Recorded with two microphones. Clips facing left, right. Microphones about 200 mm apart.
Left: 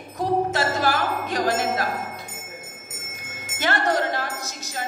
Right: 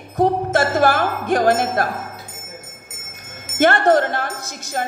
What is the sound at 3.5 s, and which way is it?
Speech, 55° right (ahead or behind).